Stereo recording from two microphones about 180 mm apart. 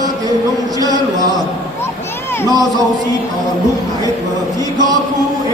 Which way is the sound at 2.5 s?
20° right (ahead or behind).